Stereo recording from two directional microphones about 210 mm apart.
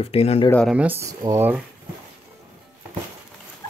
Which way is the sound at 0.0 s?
30° left (ahead or behind).